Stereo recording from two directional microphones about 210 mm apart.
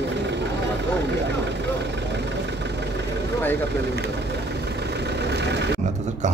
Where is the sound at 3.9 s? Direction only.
50° right (ahead or behind).